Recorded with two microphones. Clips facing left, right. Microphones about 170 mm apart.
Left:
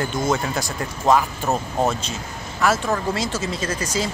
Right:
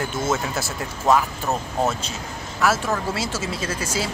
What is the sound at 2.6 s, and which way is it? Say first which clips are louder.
Speech: left 1 dB; 5° right (ahead or behind).